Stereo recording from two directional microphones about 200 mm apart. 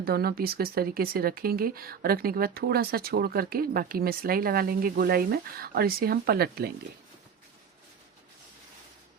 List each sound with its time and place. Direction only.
0.0 s speech: 50° right (ahead or behind)